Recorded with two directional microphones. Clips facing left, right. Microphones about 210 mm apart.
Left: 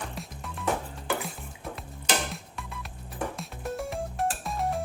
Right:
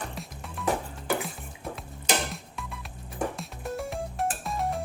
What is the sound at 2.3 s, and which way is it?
Music, centre (ahead or behind).